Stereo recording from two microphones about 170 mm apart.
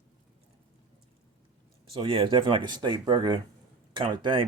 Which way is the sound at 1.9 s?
30° right (ahead or behind).